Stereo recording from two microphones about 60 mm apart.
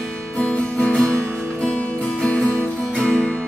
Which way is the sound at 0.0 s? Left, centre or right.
Centre.